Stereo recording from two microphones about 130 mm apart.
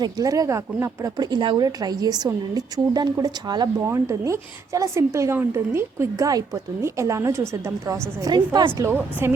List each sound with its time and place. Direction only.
0.0 s a woman's voice: 25° right (ahead or behind)
3.8 s a woman's voice: 20° right (ahead or behind)
8.2 s a woman's voice: 30° right (ahead or behind)
8.8 s a woman's voice: 15° right (ahead or behind)